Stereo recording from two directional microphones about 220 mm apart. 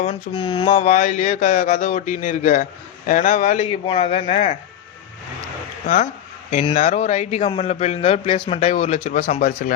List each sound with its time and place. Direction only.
0.0 s a man's voice: 25° left (ahead or behind)
6.5 s a man's voice: 30° left (ahead or behind)